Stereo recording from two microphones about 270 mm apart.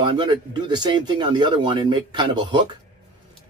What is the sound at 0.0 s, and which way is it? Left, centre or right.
Speech, centre.